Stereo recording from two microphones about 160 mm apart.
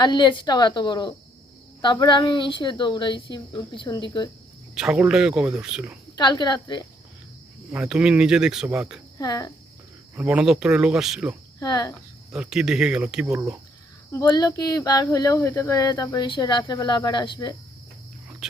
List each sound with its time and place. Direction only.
0.0 s speech: 30° left (ahead or behind)
4.7 s a woman's voice: 5° right (ahead or behind)
6.1 s speech: 25° left (ahead or behind)
7.7 s speech: 5° right (ahead or behind)
9.1 s speech: 20° left (ahead or behind)
10.2 s speech: 5° right (ahead or behind)
11.6 s speech: 25° left (ahead or behind)
12.3 s speech: 5° right (ahead or behind)
14.1 s speech: 25° left (ahead or behind)